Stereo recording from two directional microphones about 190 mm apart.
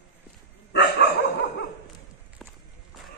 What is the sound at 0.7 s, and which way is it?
Dog, 60° left (ahead or behind).